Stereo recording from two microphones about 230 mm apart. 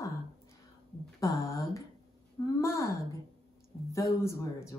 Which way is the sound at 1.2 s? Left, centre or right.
Centre.